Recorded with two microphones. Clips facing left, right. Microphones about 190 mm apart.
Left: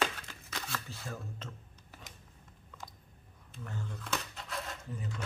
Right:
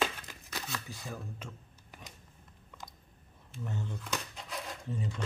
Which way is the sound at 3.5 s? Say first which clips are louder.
Right 4 dB; 20° right (ahead or behind).